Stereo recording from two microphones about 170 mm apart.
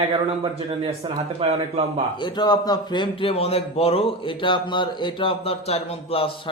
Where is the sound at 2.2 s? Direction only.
25° left (ahead or behind).